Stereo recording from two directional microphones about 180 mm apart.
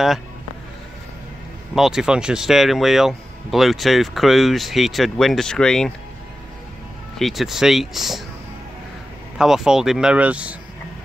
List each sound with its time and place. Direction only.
1.8 s speech: 5° right (ahead or behind)
7.2 s speech: centre (ahead or behind)
9.4 s speech: 5° right (ahead or behind)